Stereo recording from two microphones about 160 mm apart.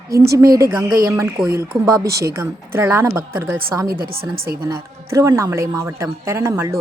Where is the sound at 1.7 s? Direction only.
35° right (ahead or behind).